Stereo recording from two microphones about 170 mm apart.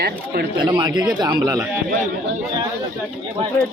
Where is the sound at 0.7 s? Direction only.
25° right (ahead or behind).